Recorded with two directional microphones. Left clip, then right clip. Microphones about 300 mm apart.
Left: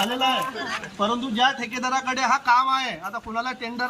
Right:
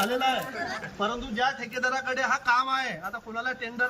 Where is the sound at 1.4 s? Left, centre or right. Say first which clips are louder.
Left 4 dB; left.